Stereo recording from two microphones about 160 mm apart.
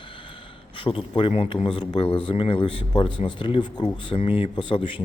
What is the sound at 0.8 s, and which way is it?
Speech, 30° left (ahead or behind).